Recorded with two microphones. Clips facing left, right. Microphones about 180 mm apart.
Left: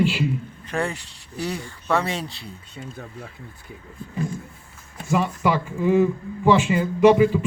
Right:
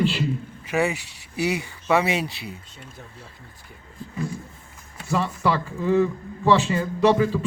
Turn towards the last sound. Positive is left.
turn(degrees=10)  # may be behind; listen again after turning